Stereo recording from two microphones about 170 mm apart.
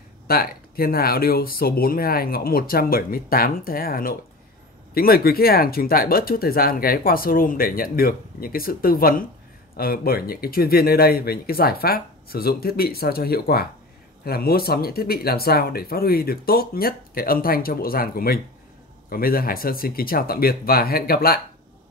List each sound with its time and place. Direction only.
0.3 s speech: 60° left (ahead or behind)